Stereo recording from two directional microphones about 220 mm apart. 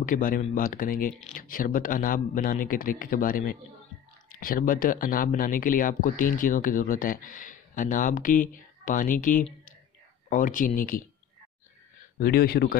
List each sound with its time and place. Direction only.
0.0 s speech: 40° left (ahead or behind)
12.2 s speech: 45° left (ahead or behind)